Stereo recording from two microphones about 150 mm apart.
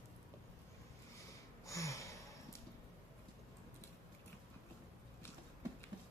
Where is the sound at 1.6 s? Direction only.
20° left (ahead or behind).